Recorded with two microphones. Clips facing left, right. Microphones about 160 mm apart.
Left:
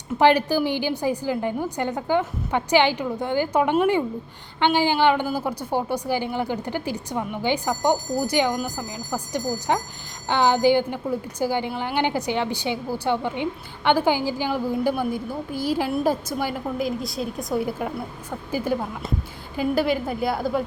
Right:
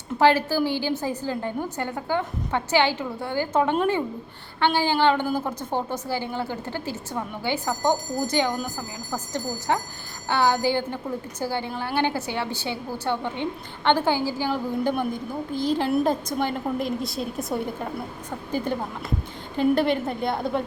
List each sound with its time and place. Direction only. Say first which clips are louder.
0.2 s a woman's voice: left 1 dB; 15° left (ahead or behind)